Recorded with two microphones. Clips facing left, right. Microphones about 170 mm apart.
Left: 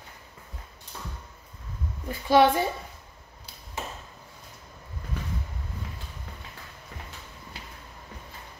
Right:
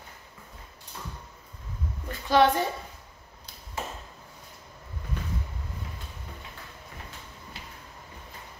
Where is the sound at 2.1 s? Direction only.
10° left (ahead or behind).